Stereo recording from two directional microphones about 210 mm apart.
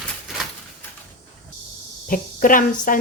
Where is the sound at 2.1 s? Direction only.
40° left (ahead or behind).